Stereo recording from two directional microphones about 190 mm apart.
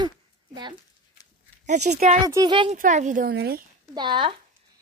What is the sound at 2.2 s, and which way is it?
Speech, 20° right (ahead or behind).